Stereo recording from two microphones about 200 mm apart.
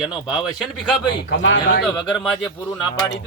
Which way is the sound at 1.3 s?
65° left (ahead or behind).